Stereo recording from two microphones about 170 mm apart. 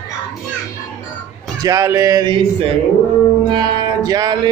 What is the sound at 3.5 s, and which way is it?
Music, 25° right (ahead or behind).